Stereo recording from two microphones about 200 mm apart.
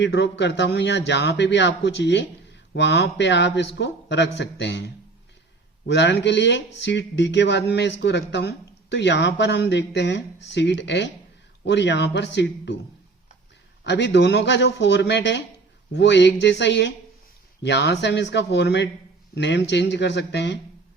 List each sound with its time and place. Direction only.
0.0 s speech: 60° left (ahead or behind)
13.8 s speech: 60° left (ahead or behind)